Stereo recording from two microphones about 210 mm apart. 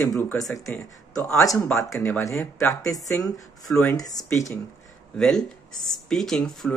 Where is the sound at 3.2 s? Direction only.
5° left (ahead or behind).